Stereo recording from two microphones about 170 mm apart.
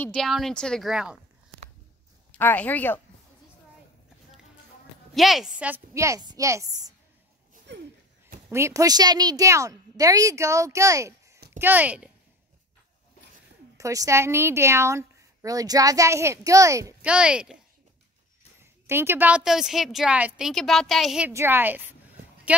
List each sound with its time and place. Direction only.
0.0 s a woman's voice: 5° left (ahead or behind)
2.3 s a woman's voice: 10° left (ahead or behind)
5.1 s a woman's voice: centre (ahead or behind); by 6.8 s 20° right (ahead or behind)
7.7 s a sound: 90° right
8.5 s a woman's voice: 15° right (ahead or behind)
13.7 s a woman's voice: 20° right (ahead or behind)
17.0 s a woman's voice: 5° right (ahead or behind)
18.6 s a woman's voice: 15° right (ahead or behind)
21.3 s a sound: 15° right (ahead or behind)